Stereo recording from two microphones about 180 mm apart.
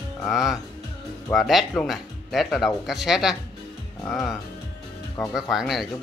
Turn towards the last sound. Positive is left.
turn(degrees=0)  # may be behind; listen again after turning